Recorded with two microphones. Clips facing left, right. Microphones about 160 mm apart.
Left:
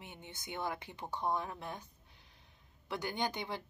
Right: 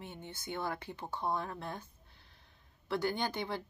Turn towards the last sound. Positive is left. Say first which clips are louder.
# right 1 dB
turn(degrees=15)  # may be behind; listen again after turning